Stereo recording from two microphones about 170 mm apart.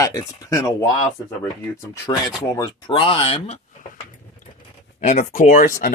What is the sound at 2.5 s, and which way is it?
Speech, 25° left (ahead or behind).